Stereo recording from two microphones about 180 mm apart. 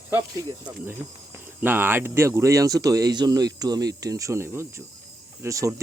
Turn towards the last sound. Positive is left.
turn(degrees=-15)  # may be behind; listen again after turning